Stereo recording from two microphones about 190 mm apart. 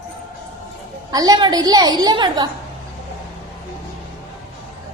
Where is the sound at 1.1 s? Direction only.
20° right (ahead or behind).